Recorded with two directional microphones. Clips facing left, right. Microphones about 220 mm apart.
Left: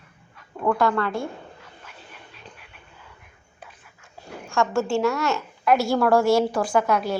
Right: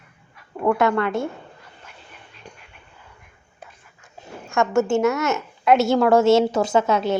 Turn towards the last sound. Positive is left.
turn(degrees=-25)  # may be behind; listen again after turning